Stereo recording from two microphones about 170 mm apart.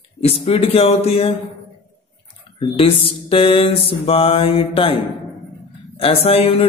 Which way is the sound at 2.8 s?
35° left (ahead or behind).